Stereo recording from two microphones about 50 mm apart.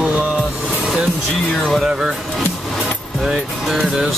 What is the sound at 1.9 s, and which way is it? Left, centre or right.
Speech, centre.